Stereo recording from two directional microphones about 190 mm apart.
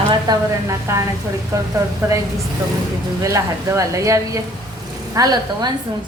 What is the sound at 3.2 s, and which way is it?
A woman's voice, 15° right (ahead or behind).